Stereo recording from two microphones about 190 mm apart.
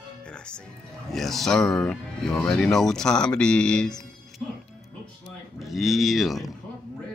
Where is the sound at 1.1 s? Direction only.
Centre (ahead or behind).